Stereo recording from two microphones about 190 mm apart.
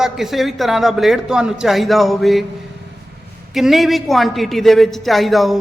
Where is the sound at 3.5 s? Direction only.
Centre (ahead or behind).